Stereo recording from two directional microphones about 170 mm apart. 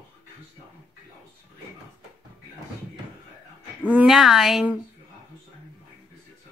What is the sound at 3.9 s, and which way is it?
Speech, 5° right (ahead or behind).